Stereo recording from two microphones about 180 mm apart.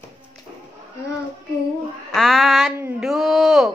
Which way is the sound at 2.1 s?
Centre (ahead or behind).